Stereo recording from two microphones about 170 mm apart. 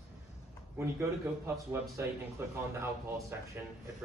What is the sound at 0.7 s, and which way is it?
A man's voice, 15° right (ahead or behind).